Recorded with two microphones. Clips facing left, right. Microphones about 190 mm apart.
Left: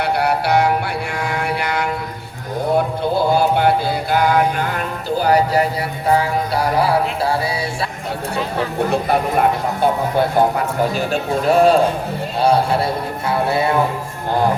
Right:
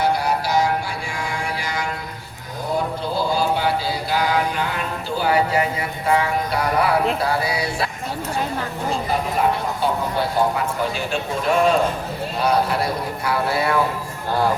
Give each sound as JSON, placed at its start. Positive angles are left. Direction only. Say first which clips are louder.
{"t": 0.0, "sound": "music", "louder": "left 2 dB", "side_deg": 65}
{"t": 1.1, "sound": "mantra", "louder": "left 4 dB", "side_deg": 65}
{"t": 6.7, "sound": "a man's voice", "louder": "even", "side_deg": 30}
{"t": 8.5, "sound": "speech", "louder": "left 6 dB", "side_deg": 60}
{"t": 10.9, "sound": "a man's voice", "louder": "left 5 dB", "side_deg": 40}